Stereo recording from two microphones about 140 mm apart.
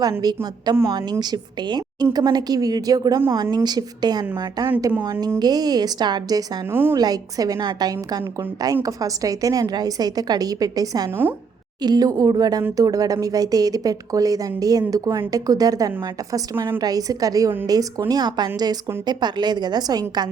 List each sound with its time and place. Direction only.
0.0 s a woman's voice: 30° right (ahead or behind)
11.1 s a woman's voice: 15° right (ahead or behind)
11.8 s a woman's voice: 30° right (ahead or behind)